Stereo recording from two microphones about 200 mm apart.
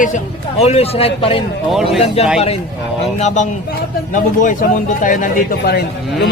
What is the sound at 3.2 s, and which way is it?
A man's voice, 35° left (ahead or behind).